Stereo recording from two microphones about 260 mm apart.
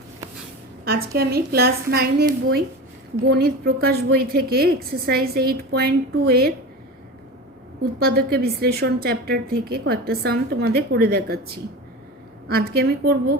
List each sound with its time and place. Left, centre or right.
0.9 s a woman's voice: right
7.9 s a woman's voice: right
12.5 s a woman's voice: right